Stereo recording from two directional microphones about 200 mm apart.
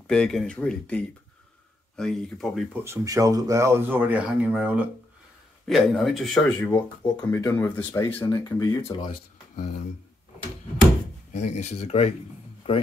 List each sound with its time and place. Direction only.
0.0 s speech: centre (ahead or behind)
2.8 s speech: 15° right (ahead or behind); by 6.4 s centre (ahead or behind)
6.7 s speech: 15° left (ahead or behind); by 9.8 s 30° left (ahead or behind)
11.3 s speech: 35° left (ahead or behind)